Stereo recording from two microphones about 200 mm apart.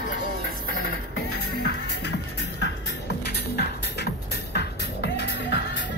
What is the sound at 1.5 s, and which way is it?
Music, 55° left (ahead or behind).